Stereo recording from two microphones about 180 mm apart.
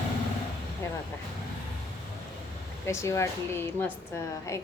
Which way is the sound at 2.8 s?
15° left (ahead or behind).